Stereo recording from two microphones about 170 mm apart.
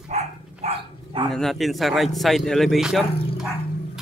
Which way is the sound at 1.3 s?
Centre (ahead or behind).